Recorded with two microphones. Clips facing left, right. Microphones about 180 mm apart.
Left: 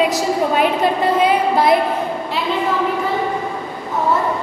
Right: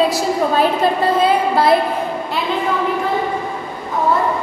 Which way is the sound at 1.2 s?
20° left (ahead or behind).